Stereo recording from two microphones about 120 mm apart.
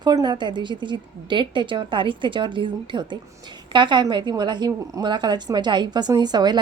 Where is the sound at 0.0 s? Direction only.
35° right (ahead or behind).